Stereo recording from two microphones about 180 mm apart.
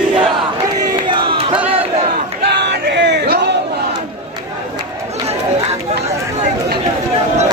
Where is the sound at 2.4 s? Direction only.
70° right (ahead or behind).